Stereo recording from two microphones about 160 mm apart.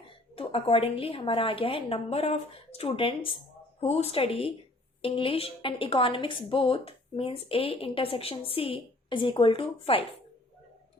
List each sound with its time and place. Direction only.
0.3 s a woman's voice: 35° left (ahead or behind)